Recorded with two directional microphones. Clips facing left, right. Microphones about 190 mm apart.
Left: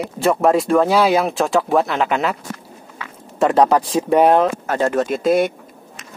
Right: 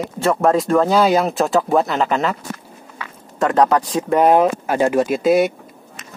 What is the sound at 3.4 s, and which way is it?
Speech, 10° left (ahead or behind).